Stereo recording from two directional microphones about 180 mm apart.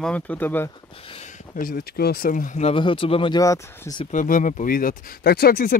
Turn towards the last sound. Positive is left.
turn(degrees=55)  # may be behind; listen again after turning